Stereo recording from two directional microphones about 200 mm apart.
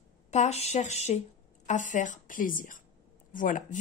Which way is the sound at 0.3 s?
35° left (ahead or behind).